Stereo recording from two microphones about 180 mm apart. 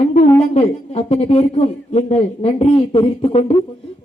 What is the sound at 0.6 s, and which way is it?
A man's voice, 35° left (ahead or behind).